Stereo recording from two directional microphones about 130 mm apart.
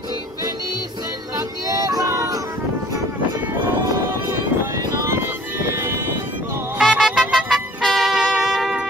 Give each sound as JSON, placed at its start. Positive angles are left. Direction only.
{"t": 1.3, "sound": "a sound", "side_deg": -30}
{"t": 4.9, "sound": "music", "side_deg": -20}
{"t": 6.8, "sound": "vehicle", "side_deg": 0}
{"t": 7.2, "sound": "music", "side_deg": 0}